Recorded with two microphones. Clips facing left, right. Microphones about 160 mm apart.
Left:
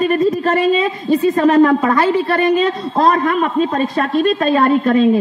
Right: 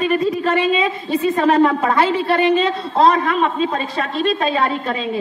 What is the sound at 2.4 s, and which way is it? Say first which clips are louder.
A man's voice: left 2 dB; 50° left (ahead or behind).